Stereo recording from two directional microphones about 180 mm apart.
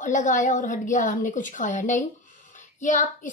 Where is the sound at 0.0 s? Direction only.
45° left (ahead or behind).